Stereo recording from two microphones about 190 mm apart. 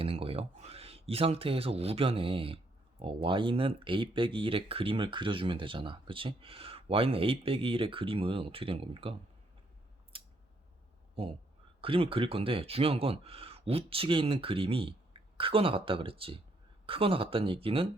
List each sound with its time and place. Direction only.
0.0 s speech: 30° right (ahead or behind)
10.1 s a sound: 30° right (ahead or behind)
11.1 s speech: 30° right (ahead or behind)